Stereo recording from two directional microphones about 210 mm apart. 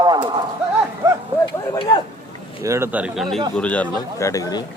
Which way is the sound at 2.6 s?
15° right (ahead or behind).